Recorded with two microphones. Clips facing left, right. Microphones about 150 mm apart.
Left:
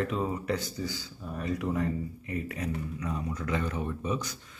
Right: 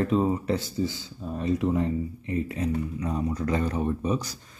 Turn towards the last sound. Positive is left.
turn(degrees=-35)  # may be behind; listen again after turning